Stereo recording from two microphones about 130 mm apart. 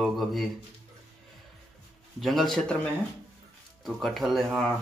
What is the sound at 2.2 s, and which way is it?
Speech, centre (ahead or behind).